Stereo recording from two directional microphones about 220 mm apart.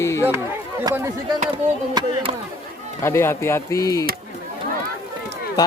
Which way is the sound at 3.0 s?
10° left (ahead or behind).